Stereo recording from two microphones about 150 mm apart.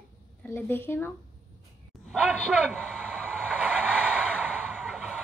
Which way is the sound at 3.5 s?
10° right (ahead or behind).